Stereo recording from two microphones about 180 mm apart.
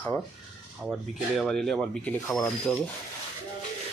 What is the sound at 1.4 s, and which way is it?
Speech, centre (ahead or behind).